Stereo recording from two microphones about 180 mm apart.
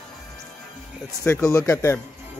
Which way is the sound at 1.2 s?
10° left (ahead or behind).